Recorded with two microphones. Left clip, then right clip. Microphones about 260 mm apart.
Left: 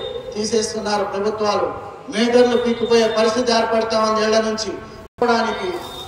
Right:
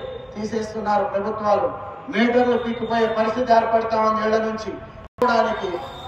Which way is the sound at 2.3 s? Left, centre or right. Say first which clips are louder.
Left 8 dB; centre.